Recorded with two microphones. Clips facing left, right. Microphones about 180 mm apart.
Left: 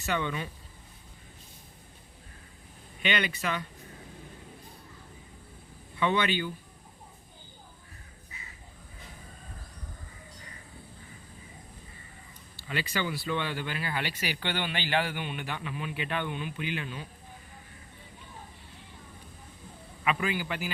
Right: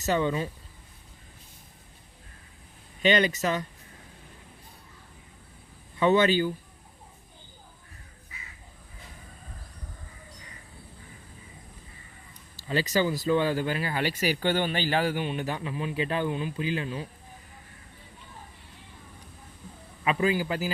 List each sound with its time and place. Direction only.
0.0 s speech: 35° right (ahead or behind)
3.0 s speech: 40° right (ahead or behind)
6.0 s speech: 40° right (ahead or behind)
12.5 s speech: 40° right (ahead or behind)
20.1 s speech: 35° right (ahead or behind)